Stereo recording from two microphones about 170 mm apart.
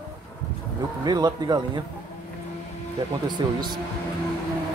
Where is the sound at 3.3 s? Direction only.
25° right (ahead or behind).